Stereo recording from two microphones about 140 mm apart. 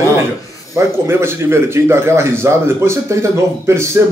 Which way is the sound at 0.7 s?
20° right (ahead or behind).